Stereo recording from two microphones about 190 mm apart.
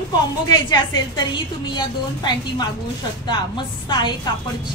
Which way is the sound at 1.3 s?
25° left (ahead or behind).